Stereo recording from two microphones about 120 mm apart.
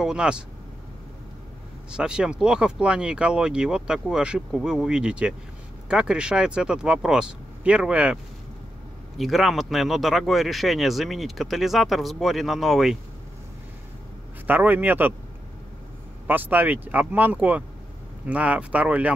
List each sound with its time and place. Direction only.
0.0 s speech: 5° right (ahead or behind)
1.9 s speech: 5° right (ahead or behind)
9.2 s speech: centre (ahead or behind)
14.5 s speech: 15° right (ahead or behind)
16.3 s speech: 15° right (ahead or behind)